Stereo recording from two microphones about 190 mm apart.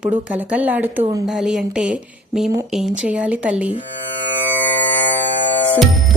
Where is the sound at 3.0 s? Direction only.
5° right (ahead or behind).